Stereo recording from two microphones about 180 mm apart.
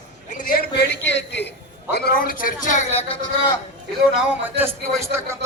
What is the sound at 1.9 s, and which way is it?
A woman's voice, 55° left (ahead or behind).